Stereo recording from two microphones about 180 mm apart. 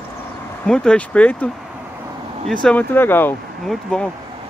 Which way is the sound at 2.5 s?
5° left (ahead or behind).